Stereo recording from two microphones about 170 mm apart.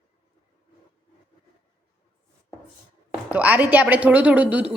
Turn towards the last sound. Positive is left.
turn(degrees=-5)  # may be behind; listen again after turning